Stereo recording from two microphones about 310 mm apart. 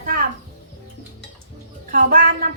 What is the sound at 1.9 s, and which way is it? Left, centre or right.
Speech, right.